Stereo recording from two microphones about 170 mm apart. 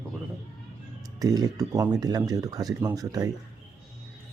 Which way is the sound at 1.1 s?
20° right (ahead or behind).